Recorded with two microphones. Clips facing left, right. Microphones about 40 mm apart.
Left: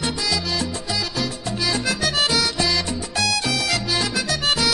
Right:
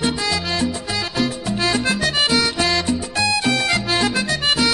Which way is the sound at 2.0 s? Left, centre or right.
Centre.